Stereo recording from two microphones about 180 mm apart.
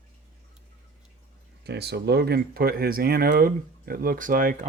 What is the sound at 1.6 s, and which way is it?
Speech, 65° right (ahead or behind).